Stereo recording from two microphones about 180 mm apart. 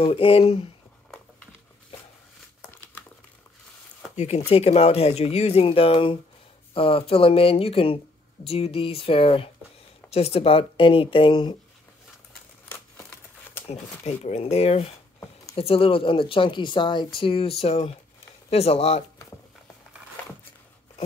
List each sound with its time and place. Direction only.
0.0 s speech: 30° left (ahead or behind)
4.5 s speech: 35° left (ahead or behind)
12.6 s crumpling: 15° left (ahead or behind)
13.7 s speech: 35° left (ahead or behind)